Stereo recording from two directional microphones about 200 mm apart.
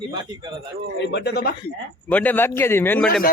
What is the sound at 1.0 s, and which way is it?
Speech, 60° left (ahead or behind).